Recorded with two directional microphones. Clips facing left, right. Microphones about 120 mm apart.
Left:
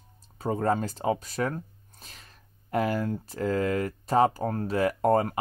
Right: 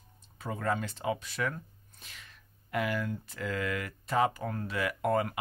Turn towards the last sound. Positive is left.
turn(degrees=35)  # may be behind; listen again after turning